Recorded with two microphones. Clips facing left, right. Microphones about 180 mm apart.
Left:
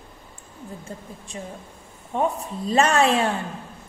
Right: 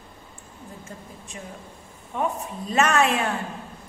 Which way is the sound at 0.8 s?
30° left (ahead or behind).